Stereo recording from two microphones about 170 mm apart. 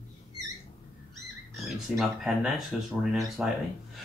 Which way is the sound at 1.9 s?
5° right (ahead or behind).